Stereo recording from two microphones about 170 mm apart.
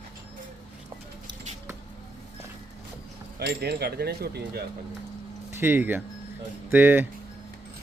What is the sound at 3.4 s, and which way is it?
Speech, 75° right (ahead or behind).